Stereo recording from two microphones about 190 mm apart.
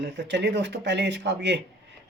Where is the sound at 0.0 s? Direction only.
65° right (ahead or behind).